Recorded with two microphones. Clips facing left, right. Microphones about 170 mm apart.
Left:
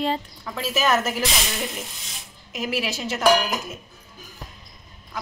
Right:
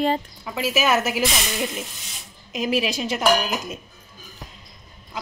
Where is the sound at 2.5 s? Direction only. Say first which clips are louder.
Right 4 dB; 20° right (ahead or behind).